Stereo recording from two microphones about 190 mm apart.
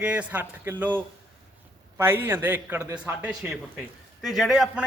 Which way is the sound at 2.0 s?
10° right (ahead or behind).